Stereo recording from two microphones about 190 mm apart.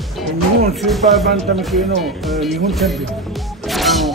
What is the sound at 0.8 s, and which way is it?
Speech, centre (ahead or behind).